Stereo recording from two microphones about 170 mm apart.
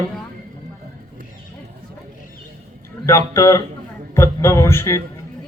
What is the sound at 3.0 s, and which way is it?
A man's voice, 15° left (ahead or behind).